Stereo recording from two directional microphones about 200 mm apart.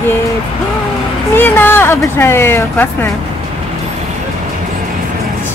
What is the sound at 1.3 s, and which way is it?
Speech, 10° left (ahead or behind).